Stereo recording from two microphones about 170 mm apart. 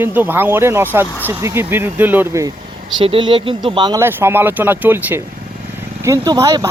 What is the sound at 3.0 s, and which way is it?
Speech, 30° right (ahead or behind).